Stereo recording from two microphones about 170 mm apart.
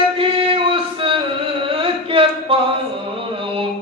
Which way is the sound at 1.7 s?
30° right (ahead or behind).